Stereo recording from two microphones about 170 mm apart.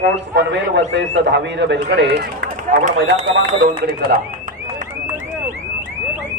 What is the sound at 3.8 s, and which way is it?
Speech, 65° right (ahead or behind).